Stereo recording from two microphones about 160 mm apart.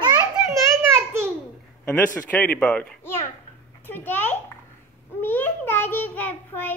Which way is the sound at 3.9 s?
10° left (ahead or behind).